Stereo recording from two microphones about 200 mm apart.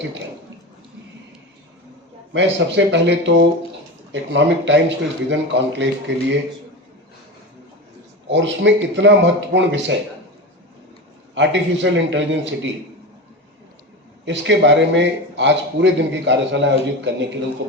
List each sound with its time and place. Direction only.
2.3 s a man's voice: 65° right (ahead or behind)
8.3 s a man's voice: 65° right (ahead or behind)
11.3 s a man's voice: 65° right (ahead or behind)
14.3 s a man's voice: 65° right (ahead or behind)